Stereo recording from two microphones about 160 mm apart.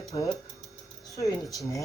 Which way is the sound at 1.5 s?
20° left (ahead or behind).